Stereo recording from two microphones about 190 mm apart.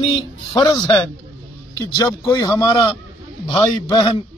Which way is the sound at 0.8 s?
5° left (ahead or behind).